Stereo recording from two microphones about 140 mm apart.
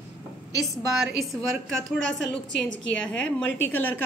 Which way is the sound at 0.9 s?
Centre (ahead or behind).